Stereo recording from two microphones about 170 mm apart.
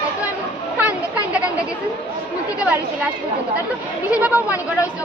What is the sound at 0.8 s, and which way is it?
Speech, 10° right (ahead or behind).